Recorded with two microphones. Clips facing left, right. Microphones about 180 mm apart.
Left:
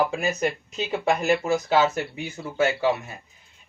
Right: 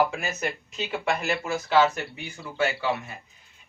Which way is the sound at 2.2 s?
25° left (ahead or behind).